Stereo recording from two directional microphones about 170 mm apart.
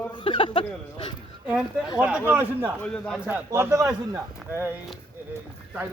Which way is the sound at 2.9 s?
Centre (ahead or behind).